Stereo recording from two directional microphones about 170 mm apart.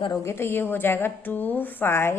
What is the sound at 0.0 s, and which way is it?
A woman's voice, 20° left (ahead or behind).